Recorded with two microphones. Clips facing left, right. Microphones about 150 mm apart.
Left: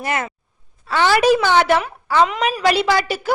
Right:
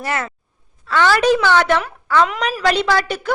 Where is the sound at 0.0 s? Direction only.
15° left (ahead or behind).